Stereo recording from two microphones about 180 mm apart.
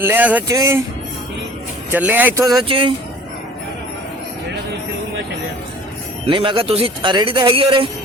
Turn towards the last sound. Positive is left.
turn(degrees=-30)  # may be behind; listen again after turning